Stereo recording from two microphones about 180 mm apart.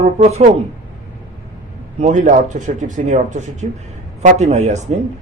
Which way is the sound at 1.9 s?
40° right (ahead or behind).